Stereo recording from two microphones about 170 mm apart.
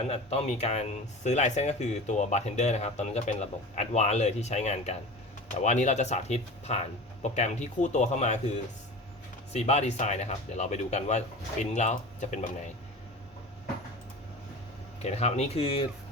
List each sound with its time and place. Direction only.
0.0 s speech: 35° left (ahead or behind)
15.0 s speech: 40° left (ahead or behind)